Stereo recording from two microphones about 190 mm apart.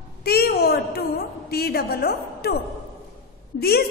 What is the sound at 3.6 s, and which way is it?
Speech, 55° left (ahead or behind).